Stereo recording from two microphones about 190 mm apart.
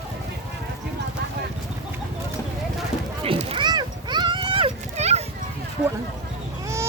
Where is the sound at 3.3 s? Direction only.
30° right (ahead or behind).